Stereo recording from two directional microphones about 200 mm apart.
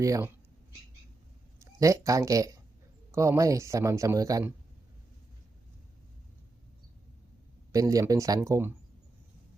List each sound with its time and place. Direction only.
0.0 s speech: 15° right (ahead or behind)
1.6 s speech: 15° right (ahead or behind)
7.7 s speech: 15° right (ahead or behind)